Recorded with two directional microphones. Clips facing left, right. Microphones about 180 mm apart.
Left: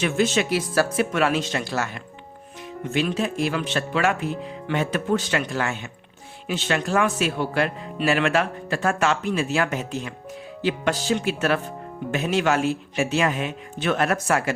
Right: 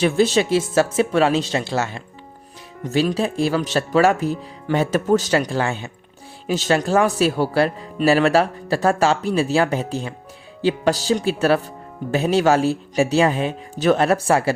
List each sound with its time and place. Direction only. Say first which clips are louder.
0.0 s speech: right 5 dB; 35° right (ahead or behind)
2.8 s speech: right 4 dB; 35° right (ahead or behind)